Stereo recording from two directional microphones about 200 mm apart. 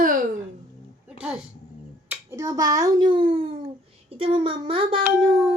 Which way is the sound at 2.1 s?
15° right (ahead or behind).